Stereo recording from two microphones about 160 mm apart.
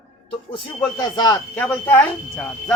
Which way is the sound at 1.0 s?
25° left (ahead or behind).